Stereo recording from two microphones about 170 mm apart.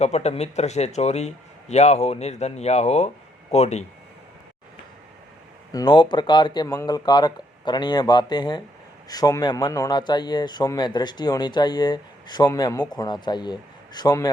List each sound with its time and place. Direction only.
0.0 s speech: 40° left (ahead or behind)
5.7 s a man's voice: 25° left (ahead or behind)